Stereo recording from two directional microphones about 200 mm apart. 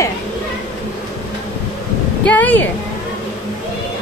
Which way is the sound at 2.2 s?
10° left (ahead or behind).